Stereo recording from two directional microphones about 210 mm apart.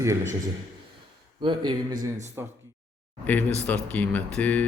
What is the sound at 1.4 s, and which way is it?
Speech, 20° right (ahead or behind).